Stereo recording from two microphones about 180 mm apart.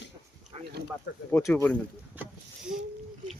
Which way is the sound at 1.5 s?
10° left (ahead or behind).